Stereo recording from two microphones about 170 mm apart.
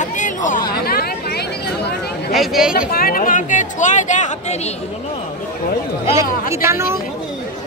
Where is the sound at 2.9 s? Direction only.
60° left (ahead or behind).